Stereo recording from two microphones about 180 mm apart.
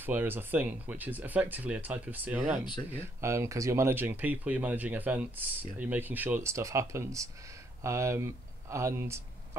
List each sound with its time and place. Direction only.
0.0 s speech: 10° right (ahead or behind)
2.6 s speech: 25° left (ahead or behind)
3.2 s speech: 15° right (ahead or behind)